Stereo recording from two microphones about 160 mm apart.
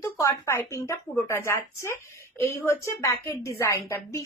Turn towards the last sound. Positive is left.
turn(degrees=20)  # may be behind; listen again after turning